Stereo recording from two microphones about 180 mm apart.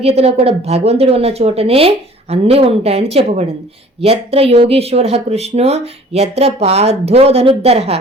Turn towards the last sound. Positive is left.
turn(degrees=-35)  # may be behind; listen again after turning